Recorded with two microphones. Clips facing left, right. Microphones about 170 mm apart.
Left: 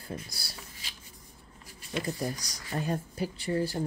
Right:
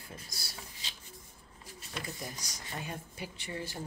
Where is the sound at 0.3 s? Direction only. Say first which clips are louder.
Left 2 dB; 35° left (ahead or behind).